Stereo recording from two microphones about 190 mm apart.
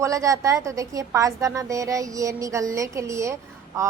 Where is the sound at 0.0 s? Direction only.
15° right (ahead or behind).